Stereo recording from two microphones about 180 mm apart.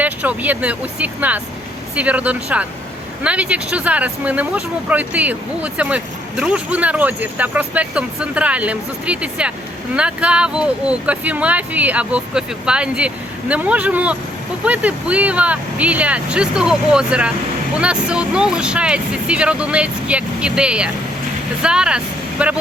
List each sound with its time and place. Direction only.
0.0 s speech: 10° right (ahead or behind)